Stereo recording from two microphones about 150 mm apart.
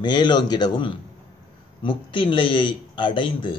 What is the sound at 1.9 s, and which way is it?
Speech, 35° left (ahead or behind).